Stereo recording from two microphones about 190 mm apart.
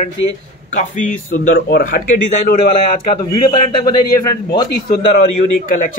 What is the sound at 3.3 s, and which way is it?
A man's voice, 25° left (ahead or behind).